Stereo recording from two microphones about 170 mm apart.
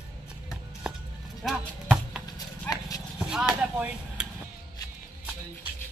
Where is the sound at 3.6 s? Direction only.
10° right (ahead or behind).